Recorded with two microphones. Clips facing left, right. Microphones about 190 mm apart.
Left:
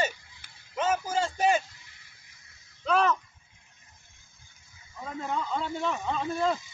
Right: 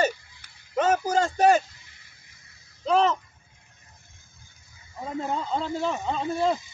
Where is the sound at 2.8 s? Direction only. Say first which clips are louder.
Right 3 dB; 30° right (ahead or behind).